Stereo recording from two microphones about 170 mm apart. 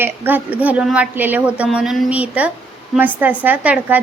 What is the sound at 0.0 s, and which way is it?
A woman's voice, 10° right (ahead or behind).